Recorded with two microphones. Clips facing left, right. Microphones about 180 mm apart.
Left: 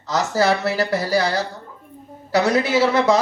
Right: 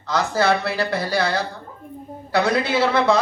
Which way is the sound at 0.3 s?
40° left (ahead or behind).